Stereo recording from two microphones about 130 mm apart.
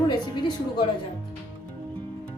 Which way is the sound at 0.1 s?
35° left (ahead or behind).